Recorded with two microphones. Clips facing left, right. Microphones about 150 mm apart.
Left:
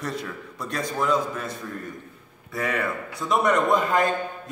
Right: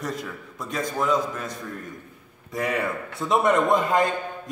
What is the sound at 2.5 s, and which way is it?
A man's voice, 20° right (ahead or behind).